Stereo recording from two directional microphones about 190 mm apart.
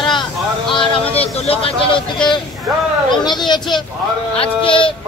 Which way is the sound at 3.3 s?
20° left (ahead or behind).